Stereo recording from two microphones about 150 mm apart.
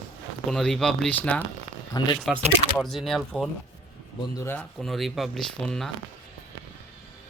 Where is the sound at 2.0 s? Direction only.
25° left (ahead or behind).